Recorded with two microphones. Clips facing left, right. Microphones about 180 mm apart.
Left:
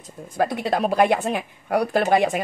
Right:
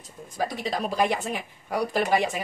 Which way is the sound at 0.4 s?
60° left (ahead or behind).